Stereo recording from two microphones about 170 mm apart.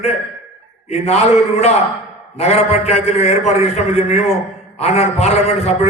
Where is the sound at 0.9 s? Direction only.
40° left (ahead or behind).